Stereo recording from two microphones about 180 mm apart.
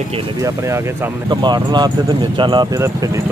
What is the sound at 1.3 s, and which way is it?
Speech, 25° right (ahead or behind).